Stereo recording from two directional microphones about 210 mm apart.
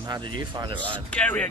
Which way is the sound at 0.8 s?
5° left (ahead or behind).